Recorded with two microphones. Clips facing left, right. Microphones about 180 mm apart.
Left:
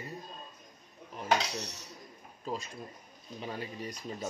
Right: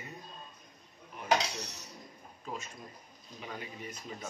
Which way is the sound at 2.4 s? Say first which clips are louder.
Left 5 dB; 35° left (ahead or behind).